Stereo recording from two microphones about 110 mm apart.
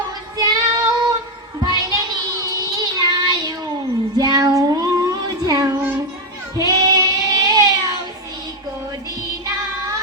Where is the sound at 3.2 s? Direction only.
40° right (ahead or behind).